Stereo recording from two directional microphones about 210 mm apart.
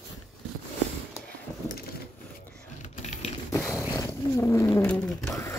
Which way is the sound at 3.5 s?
15° left (ahead or behind).